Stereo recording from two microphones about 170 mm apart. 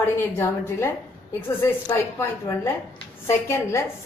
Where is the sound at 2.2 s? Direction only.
15° left (ahead or behind).